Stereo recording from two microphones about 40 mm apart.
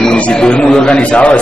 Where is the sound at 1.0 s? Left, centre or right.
Left.